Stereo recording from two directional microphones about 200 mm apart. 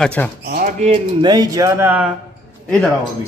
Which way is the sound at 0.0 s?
5° left (ahead or behind).